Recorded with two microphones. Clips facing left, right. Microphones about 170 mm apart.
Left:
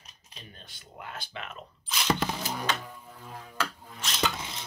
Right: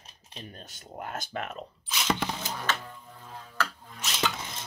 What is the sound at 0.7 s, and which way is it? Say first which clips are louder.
Speech: right 4 dB; 45° right (ahead or behind).